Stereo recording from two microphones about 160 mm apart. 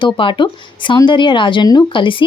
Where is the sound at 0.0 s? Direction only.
30° left (ahead or behind).